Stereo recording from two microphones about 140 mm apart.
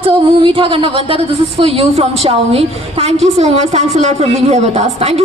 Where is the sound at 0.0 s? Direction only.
40° right (ahead or behind).